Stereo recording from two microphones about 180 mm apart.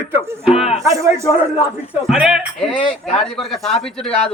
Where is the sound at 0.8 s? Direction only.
15° right (ahead or behind).